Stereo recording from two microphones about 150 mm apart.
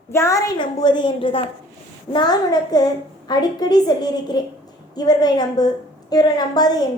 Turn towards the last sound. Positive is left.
turn(degrees=25)  # may be behind; listen again after turning